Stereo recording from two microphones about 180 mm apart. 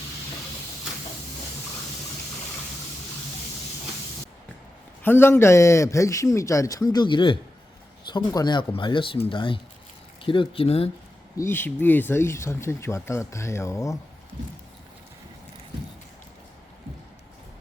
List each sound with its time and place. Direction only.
5.0 s speech: 10° left (ahead or behind); by 10.8 s 30° left (ahead or behind)
11.3 s speech: 15° left (ahead or behind)